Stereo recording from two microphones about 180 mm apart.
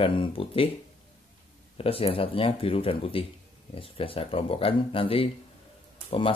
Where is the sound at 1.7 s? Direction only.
30° left (ahead or behind).